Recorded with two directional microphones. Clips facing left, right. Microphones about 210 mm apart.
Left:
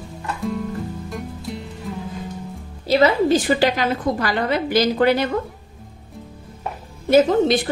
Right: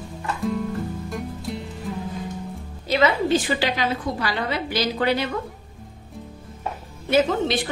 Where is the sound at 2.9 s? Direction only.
40° left (ahead or behind).